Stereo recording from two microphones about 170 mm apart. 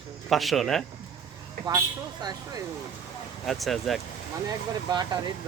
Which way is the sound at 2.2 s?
20° right (ahead or behind).